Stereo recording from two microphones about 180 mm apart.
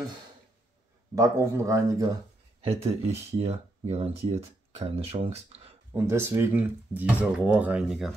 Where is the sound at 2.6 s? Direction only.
35° right (ahead or behind).